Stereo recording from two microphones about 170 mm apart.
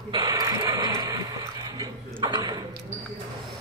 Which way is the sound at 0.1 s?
20° right (ahead or behind).